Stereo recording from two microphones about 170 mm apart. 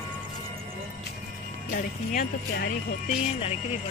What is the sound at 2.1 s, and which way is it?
Speech, 55° left (ahead or behind).